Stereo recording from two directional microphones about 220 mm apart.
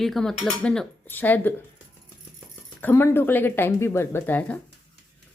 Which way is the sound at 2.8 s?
10° left (ahead or behind).